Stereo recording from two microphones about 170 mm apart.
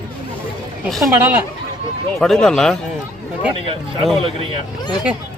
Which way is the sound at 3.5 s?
30° right (ahead or behind).